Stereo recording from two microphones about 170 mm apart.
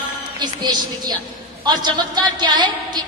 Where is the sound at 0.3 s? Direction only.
25° right (ahead or behind).